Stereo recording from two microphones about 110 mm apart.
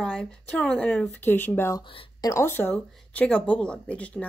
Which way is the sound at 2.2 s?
25° left (ahead or behind).